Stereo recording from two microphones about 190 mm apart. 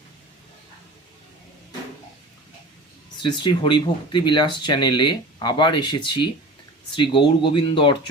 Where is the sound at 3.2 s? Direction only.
25° left (ahead or behind).